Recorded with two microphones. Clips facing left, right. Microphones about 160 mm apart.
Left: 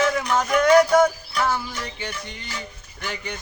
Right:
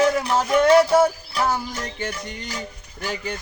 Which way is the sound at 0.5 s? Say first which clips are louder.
Right 1 dB; 30° right (ahead or behind).